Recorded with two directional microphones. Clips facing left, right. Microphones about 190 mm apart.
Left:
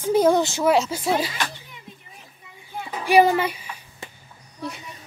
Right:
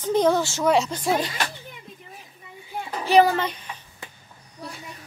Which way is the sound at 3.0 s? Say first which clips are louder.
Left 1 dB; 10° left (ahead or behind).